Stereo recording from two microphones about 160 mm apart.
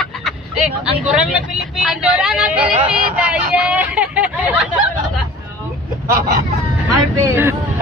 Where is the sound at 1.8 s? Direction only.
5° right (ahead or behind).